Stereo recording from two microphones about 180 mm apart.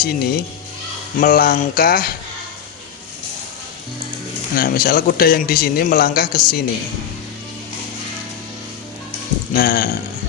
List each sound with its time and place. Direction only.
0.0 s a man's voice: 55° left (ahead or behind)
4.5 s a man's voice: 55° left (ahead or behind)
9.5 s a man's voice: 55° left (ahead or behind)